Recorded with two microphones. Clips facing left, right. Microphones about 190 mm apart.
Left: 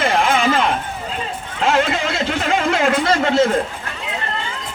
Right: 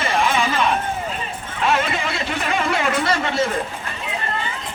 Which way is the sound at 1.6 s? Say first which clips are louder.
Left 3 dB; 90° left.